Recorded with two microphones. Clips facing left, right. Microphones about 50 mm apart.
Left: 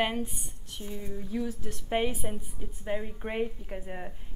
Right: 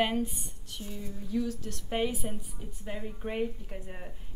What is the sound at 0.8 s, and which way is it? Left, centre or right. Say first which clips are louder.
A woman's voice: left 3 dB; left.